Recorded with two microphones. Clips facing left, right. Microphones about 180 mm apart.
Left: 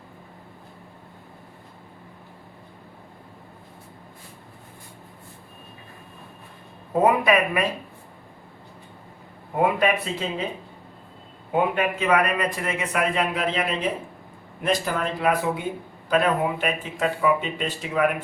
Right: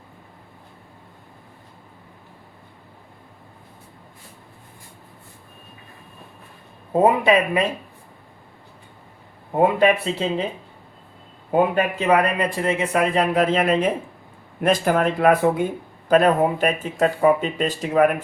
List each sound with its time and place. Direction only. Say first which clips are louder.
7.0 s speech: right 3 dB; 25° right (ahead or behind)
9.6 s speech: right 4 dB; 30° right (ahead or behind)
11.5 s speech: right 4 dB; 35° right (ahead or behind)